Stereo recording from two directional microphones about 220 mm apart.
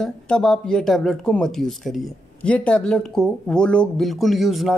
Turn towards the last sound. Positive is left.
turn(degrees=0)  # may be behind; listen again after turning